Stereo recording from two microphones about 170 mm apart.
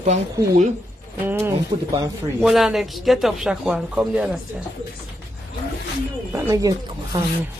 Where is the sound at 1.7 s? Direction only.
40° right (ahead or behind).